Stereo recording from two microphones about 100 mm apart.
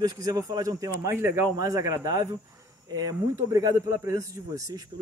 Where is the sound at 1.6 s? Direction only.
40° right (ahead or behind).